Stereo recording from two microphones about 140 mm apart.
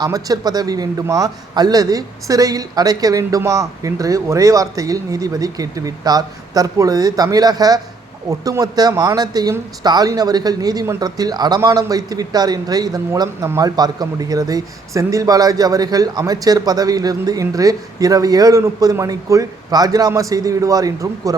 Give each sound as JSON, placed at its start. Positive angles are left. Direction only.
{"t": 0.0, "sound": "speech", "side_deg": -25}